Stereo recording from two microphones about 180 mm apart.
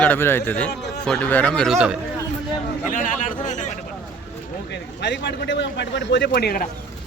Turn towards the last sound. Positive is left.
turn(degrees=60)  # may be behind; listen again after turning